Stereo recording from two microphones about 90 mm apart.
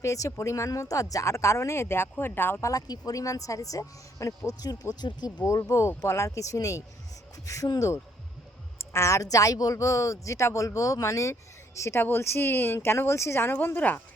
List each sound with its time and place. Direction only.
0.0 s speech: 35° left (ahead or behind)
2.6 s speech: 45° left (ahead or behind)
5.5 s speech: 40° left (ahead or behind); by 14.0 s 20° left (ahead or behind)